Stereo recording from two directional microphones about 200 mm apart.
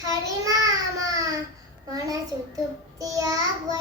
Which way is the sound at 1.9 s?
15° right (ahead or behind).